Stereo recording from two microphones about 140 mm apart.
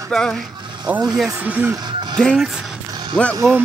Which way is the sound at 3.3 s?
20° right (ahead or behind).